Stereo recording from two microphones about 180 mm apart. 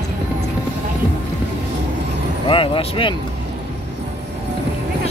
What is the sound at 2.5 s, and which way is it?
Speech, 30° left (ahead or behind).